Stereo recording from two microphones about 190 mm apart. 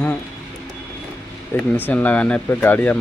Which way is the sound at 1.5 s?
10° left (ahead or behind).